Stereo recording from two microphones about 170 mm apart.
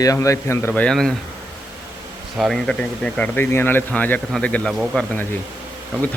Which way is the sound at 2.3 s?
Centre (ahead or behind).